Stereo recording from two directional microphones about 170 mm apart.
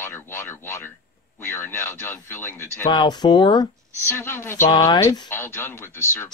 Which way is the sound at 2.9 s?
25° left (ahead or behind).